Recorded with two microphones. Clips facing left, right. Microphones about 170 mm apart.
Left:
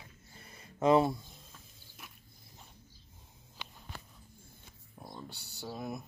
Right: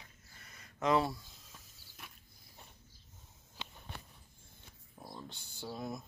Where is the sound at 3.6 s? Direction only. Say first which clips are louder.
Even; 25° right (ahead or behind).